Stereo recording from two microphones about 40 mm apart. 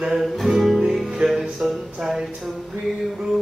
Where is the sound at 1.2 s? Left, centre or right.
Centre.